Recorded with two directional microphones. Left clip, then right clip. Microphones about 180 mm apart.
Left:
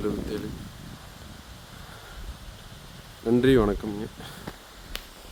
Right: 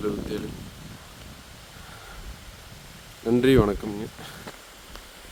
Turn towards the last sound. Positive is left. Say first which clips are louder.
# right 1 dB
turn(degrees=0)  # may be behind; listen again after turning